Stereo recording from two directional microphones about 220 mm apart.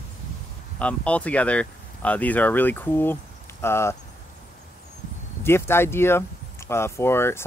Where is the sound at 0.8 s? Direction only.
5° left (ahead or behind).